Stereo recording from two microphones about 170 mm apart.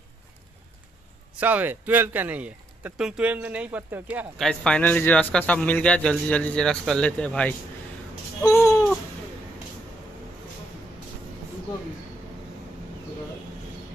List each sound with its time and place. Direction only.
1.4 s speech: 10° right (ahead or behind)
4.4 s a man's voice: 5° left (ahead or behind)
8.5 s babbling: 15° left (ahead or behind)